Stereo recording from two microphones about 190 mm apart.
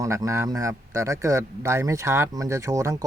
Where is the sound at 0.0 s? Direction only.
15° right (ahead or behind).